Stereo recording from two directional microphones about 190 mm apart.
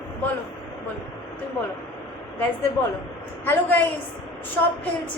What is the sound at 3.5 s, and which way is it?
Speech, 10° left (ahead or behind).